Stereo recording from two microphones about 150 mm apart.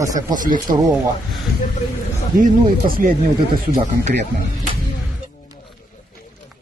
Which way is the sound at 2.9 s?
70° right (ahead or behind).